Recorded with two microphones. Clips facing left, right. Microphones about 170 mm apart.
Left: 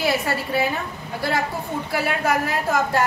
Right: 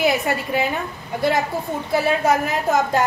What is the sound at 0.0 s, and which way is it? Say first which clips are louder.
Speech: right 3 dB; 20° right (ahead or behind).